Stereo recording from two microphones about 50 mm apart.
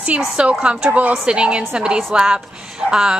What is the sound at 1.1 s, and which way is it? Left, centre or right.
A woman's voice, centre.